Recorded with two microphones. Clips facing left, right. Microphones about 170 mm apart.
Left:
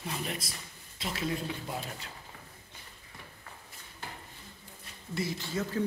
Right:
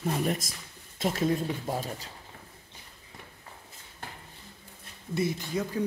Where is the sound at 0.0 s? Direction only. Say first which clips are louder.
Right 8 dB; 45° right (ahead or behind).